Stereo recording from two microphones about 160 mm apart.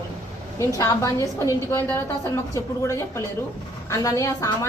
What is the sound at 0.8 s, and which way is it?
Speech, 20° left (ahead or behind).